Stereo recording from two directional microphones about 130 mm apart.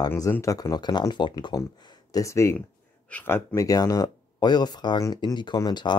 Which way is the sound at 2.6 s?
10° left (ahead or behind).